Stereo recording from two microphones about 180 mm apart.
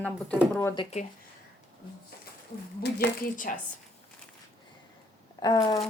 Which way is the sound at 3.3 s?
50° left (ahead or behind).